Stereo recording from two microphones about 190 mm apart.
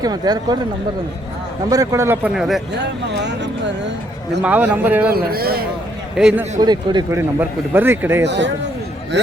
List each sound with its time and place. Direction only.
0.0 s speech: 20° right (ahead or behind)
1.7 s a man's voice: 15° right (ahead or behind)
2.8 s speech: 65° right (ahead or behind)
4.4 s a man's voice: 10° right (ahead or behind)
5.1 s a man's voice: 50° right (ahead or behind)
6.1 s a man's voice: 5° right (ahead or behind)
6.6 s a man's voice: 20° right (ahead or behind)
8.2 s speech: 70° right (ahead or behind)